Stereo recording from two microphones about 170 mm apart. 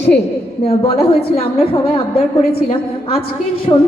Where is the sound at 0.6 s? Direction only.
35° left (ahead or behind).